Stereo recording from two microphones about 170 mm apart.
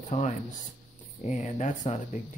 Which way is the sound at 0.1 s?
40° left (ahead or behind).